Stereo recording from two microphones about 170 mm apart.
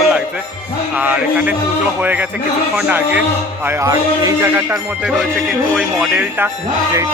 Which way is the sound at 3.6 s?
20° right (ahead or behind).